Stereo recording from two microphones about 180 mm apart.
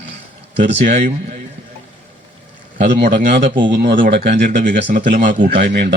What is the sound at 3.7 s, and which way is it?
Speech, 70° right (ahead or behind).